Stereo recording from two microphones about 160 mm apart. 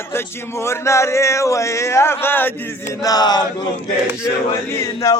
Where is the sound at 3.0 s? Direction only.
25° left (ahead or behind).